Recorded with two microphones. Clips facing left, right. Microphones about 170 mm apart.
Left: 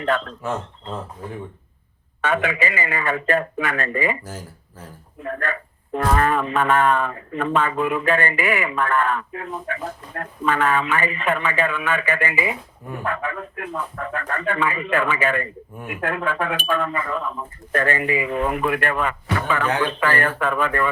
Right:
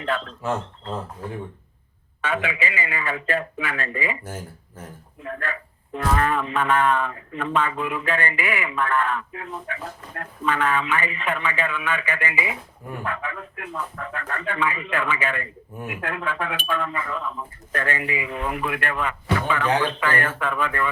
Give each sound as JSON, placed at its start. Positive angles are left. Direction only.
{"t": 0.0, "sound": "speech", "side_deg": 45}
{"t": 2.2, "sound": "speech", "side_deg": 45}
{"t": 5.2, "sound": "speech", "side_deg": 50}